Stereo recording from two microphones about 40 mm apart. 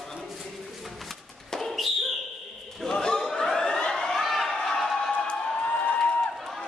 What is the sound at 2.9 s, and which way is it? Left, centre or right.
Chatter, centre.